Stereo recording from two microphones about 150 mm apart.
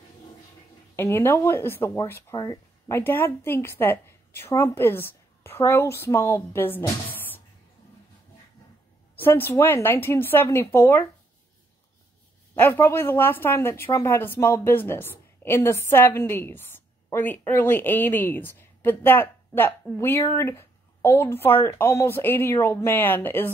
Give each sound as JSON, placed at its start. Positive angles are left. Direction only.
{"t": 0.9, "sound": "a woman's voice", "side_deg": 15}
{"t": 9.1, "sound": "a woman's voice", "side_deg": 15}
{"t": 12.5, "sound": "a woman's voice", "side_deg": 15}